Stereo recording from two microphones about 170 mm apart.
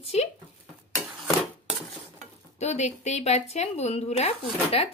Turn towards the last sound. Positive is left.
turn(degrees=35)  # may be behind; listen again after turning